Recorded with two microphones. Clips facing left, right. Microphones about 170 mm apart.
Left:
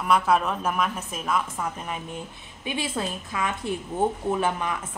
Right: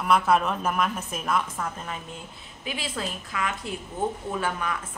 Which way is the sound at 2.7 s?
20° left (ahead or behind).